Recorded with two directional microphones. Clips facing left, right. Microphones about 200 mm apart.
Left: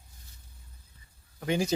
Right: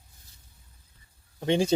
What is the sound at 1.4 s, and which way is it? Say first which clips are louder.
Speech: right 4 dB; 25° right (ahead or behind).